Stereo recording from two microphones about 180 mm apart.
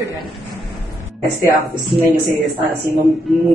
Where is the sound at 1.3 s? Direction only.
15° left (ahead or behind).